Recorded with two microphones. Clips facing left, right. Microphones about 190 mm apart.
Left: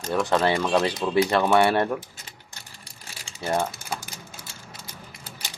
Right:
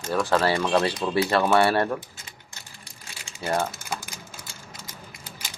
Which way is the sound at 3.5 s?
15° left (ahead or behind).